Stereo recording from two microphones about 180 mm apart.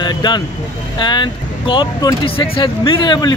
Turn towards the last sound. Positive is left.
turn(degrees=25)  # may be behind; listen again after turning